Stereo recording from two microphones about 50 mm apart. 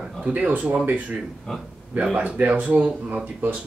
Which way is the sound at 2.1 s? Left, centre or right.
Right.